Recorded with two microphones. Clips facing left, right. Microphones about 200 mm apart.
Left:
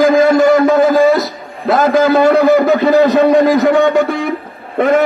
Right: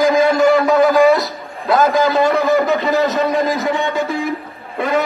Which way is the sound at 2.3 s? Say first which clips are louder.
Left 5 dB; 35° left (ahead or behind).